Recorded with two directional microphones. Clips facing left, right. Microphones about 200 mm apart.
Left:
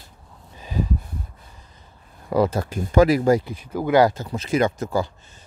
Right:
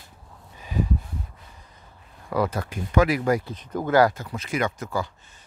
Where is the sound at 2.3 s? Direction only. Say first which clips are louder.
Left 5 dB; 25° left (ahead or behind).